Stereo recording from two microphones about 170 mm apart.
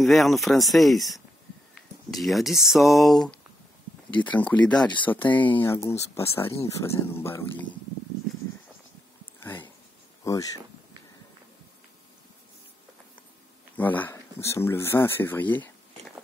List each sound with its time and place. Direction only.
0.0 s speech: centre (ahead or behind)
9.4 s a sound: 10° left (ahead or behind)
10.2 s speech: 20° left (ahead or behind)
13.7 s speech: 10° left (ahead or behind)